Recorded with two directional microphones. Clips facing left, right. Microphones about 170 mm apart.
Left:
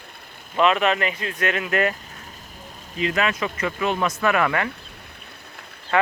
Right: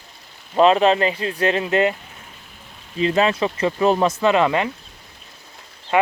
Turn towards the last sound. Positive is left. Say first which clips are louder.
# right 3 dB
turn(degrees=-20)  # may be behind; listen again after turning